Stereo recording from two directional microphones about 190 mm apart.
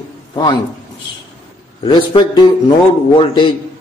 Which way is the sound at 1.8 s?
25° left (ahead or behind).